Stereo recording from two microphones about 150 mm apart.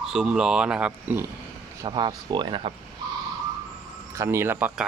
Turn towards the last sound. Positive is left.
turn(degrees=-15)  # may be behind; listen again after turning